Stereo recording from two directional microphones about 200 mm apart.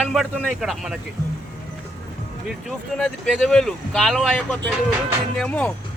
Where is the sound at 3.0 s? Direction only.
Centre (ahead or behind).